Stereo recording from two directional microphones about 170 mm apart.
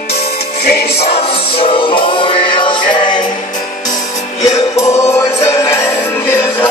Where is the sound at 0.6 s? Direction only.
70° left (ahead or behind).